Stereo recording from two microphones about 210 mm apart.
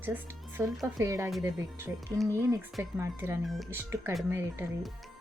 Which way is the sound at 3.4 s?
Centre (ahead or behind).